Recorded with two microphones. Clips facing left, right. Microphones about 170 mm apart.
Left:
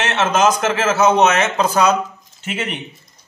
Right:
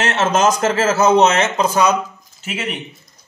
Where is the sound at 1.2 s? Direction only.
30° right (ahead or behind).